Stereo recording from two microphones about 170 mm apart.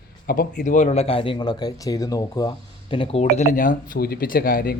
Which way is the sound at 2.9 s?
35° left (ahead or behind).